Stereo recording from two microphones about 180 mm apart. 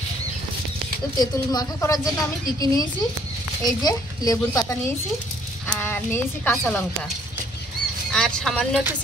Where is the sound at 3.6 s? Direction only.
20° left (ahead or behind).